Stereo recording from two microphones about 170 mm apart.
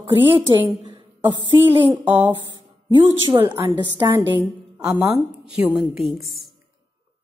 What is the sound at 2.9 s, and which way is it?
Speech, 25° right (ahead or behind).